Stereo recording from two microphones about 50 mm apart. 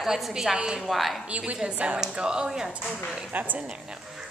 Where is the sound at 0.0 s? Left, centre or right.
Centre.